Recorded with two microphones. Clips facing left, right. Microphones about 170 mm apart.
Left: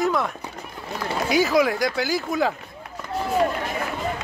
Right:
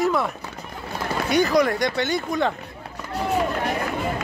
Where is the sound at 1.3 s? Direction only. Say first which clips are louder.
Even; centre (ahead or behind).